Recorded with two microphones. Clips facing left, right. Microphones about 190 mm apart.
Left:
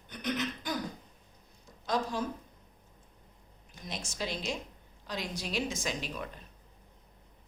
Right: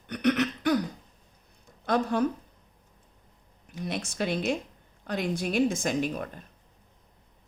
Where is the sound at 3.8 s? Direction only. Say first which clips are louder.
Right 8 dB; 60° right (ahead or behind).